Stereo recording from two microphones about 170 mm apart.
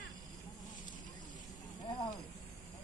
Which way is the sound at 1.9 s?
20° left (ahead or behind).